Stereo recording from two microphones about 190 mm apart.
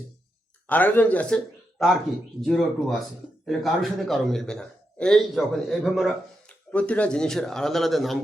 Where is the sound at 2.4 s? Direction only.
Centre (ahead or behind).